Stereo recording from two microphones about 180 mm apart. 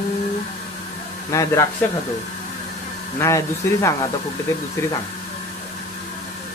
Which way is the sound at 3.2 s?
15° left (ahead or behind).